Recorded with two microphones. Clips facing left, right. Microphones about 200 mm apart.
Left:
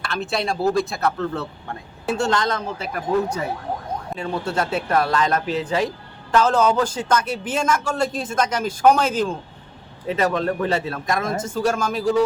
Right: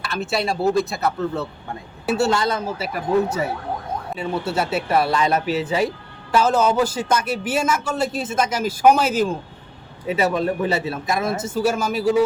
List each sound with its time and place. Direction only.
0.0 s speech: 5° right (ahead or behind)
4.1 s a man's voice: 5° right (ahead or behind)